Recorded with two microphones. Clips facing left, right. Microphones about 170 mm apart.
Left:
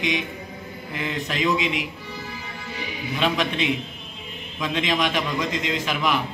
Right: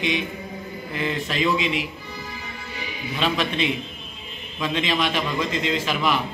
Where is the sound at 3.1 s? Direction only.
15° left (ahead or behind).